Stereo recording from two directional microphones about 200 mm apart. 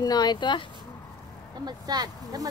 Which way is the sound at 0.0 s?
20° left (ahead or behind).